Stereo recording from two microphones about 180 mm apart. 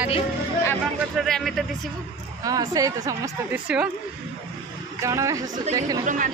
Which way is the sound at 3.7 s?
5° right (ahead or behind).